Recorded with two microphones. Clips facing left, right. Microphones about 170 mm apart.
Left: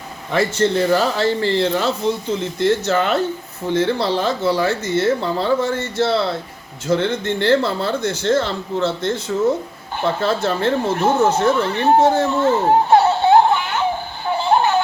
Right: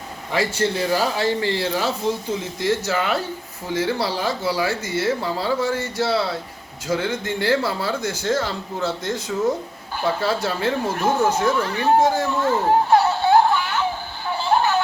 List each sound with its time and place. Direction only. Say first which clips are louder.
0.3 s speech: left 4 dB; 10° right (ahead or behind)
2.4 s speech: left 7 dB; 60° left (ahead or behind)
2.8 s speech: left 5 dB; 10° right (ahead or behind)
10.2 s speech: left 4 dB; 10° right (ahead or behind)
10.8 s speech: left 3 dB; 25° left (ahead or behind)
11.3 s speech: left 4 dB; 65° left (ahead or behind)
11.5 s speech: left 3 dB; 25° left (ahead or behind)
11.9 s speech: left 4 dB; 65° left (ahead or behind)
12.2 s a sound: left 4 dB; 25° left (ahead or behind)
14.3 s music: left 3 dB; 20° left (ahead or behind)